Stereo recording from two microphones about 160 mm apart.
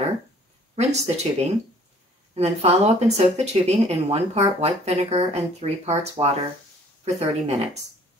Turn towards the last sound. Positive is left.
turn(degrees=-40)  # may be behind; listen again after turning